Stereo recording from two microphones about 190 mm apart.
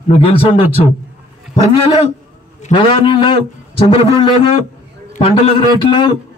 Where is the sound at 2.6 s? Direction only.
25° left (ahead or behind).